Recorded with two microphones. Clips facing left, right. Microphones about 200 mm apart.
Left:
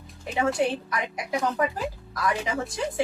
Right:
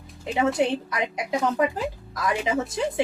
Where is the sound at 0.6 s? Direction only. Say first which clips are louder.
Right 2 dB; 20° right (ahead or behind).